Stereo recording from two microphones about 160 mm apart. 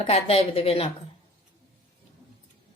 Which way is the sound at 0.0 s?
40° left (ahead or behind).